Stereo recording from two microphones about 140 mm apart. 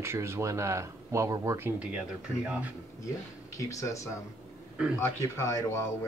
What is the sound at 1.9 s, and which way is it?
Speech, 10° right (ahead or behind).